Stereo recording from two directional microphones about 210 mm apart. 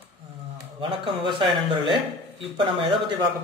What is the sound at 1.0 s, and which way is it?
A man's voice, 25° right (ahead or behind).